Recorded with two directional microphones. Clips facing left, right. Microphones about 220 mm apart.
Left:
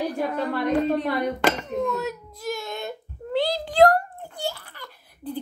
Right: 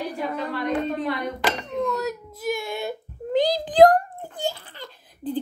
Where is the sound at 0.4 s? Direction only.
50° left (ahead or behind).